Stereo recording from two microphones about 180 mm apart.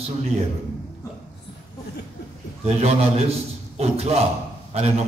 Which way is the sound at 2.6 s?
35° right (ahead or behind).